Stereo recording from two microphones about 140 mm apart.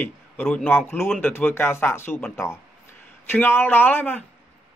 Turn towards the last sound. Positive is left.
turn(degrees=15)  # may be behind; listen again after turning